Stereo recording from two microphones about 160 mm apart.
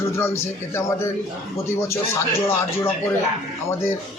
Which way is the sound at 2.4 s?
15° left (ahead or behind).